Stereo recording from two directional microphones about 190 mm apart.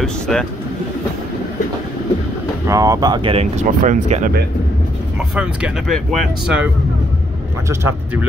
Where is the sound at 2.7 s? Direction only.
20° right (ahead or behind); by 4.3 s 40° right (ahead or behind).